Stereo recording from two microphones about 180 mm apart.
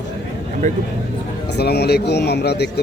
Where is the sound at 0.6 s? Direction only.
45° right (ahead or behind).